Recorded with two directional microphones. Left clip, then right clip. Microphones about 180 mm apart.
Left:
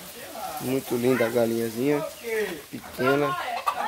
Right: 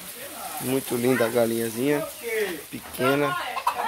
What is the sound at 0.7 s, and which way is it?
Speech, centre (ahead or behind).